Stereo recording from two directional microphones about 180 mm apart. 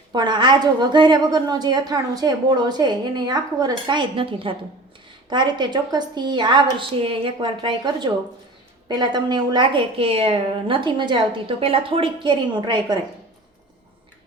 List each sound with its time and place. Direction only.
0.1 s a woman's voice: 25° right (ahead or behind)